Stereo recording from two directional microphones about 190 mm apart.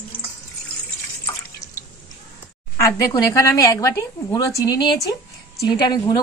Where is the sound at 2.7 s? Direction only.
20° left (ahead or behind).